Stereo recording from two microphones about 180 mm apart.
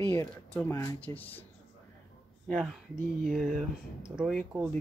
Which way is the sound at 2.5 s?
5° left (ahead or behind).